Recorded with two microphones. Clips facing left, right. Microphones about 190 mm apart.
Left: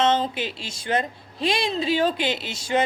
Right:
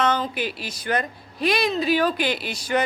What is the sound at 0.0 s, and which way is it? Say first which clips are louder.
A woman's voice: left 1 dB; 25° left (ahead or behind).